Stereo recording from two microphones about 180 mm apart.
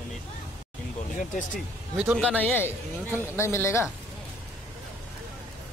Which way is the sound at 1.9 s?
10° right (ahead or behind).